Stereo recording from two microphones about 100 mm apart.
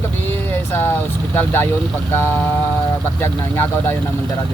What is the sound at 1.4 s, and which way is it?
Speech, 20° left (ahead or behind).